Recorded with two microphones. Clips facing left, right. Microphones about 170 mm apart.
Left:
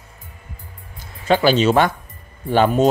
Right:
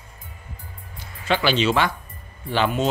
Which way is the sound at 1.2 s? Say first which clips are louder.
Left 6 dB; 40° left (ahead or behind).